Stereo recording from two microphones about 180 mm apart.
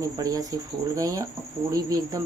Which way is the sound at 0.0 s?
20° right (ahead or behind).